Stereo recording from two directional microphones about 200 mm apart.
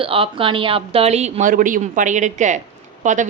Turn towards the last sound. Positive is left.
turn(degrees=-40)  # may be behind; listen again after turning